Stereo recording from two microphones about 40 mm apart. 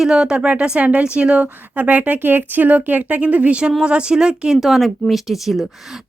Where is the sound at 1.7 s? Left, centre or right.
Right.